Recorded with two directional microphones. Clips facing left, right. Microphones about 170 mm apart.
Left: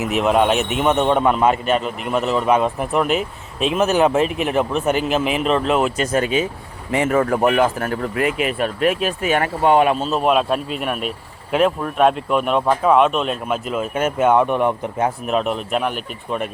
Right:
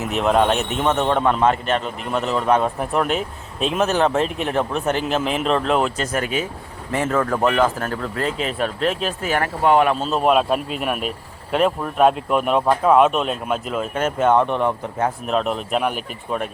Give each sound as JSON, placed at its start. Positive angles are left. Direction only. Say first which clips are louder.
{"t": 0.0, "sound": "a man's voice", "louder": "left 1 dB", "side_deg": 5}
{"t": 6.0, "sound": "a man's voice", "louder": "left 4 dB", "side_deg": 20}
{"t": 9.3, "sound": "speech", "louder": "left 1 dB", "side_deg": 20}
{"t": 10.0, "sound": "speech", "louder": "even", "side_deg": 0}
{"t": 15.3, "sound": "speech", "louder": "left 1 dB", "side_deg": 5}